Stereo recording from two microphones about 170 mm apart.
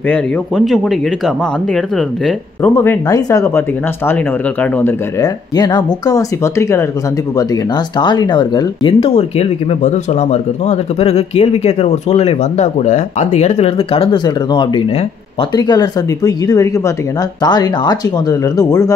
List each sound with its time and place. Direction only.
0.1 s speech: centre (ahead or behind)
2.7 s speech: 15° left (ahead or behind)
5.2 s speech: 25° left (ahead or behind)